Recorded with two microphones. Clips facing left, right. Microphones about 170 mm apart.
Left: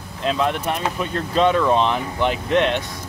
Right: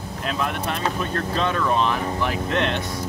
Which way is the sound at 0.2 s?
20° left (ahead or behind).